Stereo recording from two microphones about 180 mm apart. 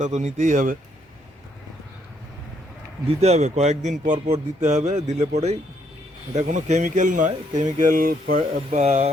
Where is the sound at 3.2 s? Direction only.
40° right (ahead or behind).